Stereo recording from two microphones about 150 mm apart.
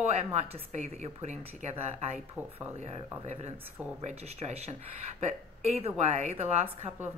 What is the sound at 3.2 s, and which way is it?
A woman's voice, 45° right (ahead or behind).